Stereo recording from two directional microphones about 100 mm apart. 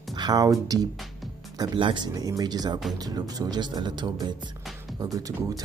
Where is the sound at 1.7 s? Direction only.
50° right (ahead or behind).